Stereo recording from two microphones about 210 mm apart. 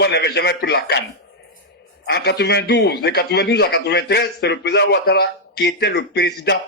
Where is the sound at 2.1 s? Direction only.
50° left (ahead or behind).